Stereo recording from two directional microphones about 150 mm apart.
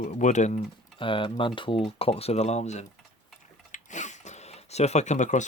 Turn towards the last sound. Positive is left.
turn(degrees=55)  # may be behind; listen again after turning